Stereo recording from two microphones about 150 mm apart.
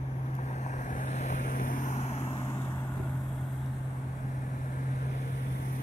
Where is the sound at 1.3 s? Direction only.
60° left (ahead or behind).